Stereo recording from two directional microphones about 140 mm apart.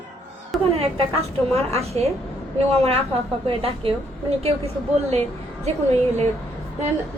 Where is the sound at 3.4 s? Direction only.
40° right (ahead or behind).